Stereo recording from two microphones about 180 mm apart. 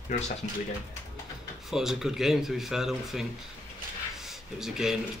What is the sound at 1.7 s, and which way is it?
Speech, centre (ahead or behind).